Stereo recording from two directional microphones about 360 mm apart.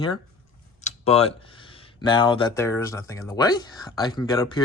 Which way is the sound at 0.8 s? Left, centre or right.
Centre.